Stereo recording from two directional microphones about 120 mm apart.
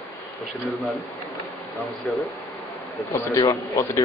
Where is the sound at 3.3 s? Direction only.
25° left (ahead or behind).